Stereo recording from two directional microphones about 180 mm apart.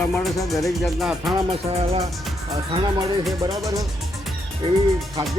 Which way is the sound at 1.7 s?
35° right (ahead or behind).